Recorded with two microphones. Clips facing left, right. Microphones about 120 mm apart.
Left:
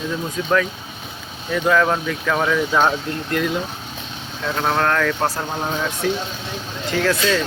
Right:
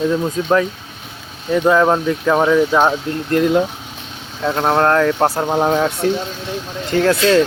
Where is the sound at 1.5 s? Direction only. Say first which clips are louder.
Right 5 dB; 20° right (ahead or behind).